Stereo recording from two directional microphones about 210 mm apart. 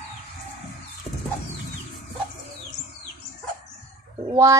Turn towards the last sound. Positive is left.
turn(degrees=-15)  # may be behind; listen again after turning